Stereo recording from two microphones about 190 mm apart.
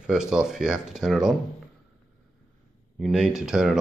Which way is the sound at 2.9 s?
Centre (ahead or behind).